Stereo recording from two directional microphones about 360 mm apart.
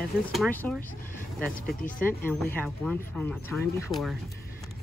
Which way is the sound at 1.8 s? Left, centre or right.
Left.